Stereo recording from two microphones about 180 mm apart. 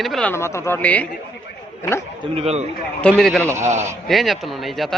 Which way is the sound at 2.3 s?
35° right (ahead or behind).